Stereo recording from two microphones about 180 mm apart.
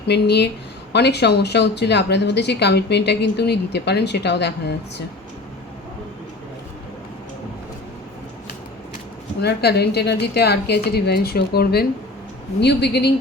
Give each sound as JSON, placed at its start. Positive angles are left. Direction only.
{"t": 0.1, "sound": "a woman's voice", "side_deg": 70}
{"t": 9.4, "sound": "a woman's voice", "side_deg": 65}